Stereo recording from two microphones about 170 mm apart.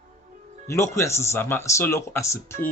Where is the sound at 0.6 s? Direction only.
15° left (ahead or behind).